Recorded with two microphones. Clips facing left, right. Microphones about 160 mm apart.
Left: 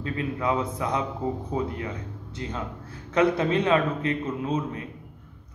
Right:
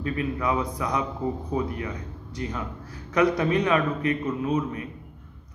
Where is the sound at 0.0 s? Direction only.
25° left (ahead or behind).